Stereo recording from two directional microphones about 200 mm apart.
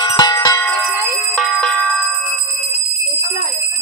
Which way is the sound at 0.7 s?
Centre (ahead or behind).